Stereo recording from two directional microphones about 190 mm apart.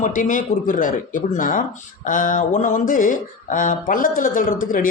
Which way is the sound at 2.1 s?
45° left (ahead or behind).